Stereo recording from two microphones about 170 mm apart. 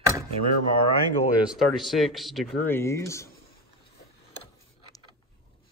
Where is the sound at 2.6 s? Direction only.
15° left (ahead or behind).